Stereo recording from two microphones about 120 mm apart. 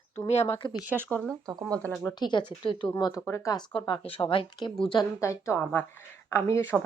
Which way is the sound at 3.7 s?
45° left (ahead or behind).